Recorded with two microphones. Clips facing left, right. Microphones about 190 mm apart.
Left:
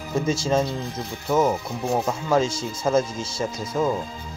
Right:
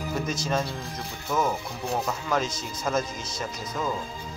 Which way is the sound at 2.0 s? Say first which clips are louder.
Left 6 dB; 30° left (ahead or behind).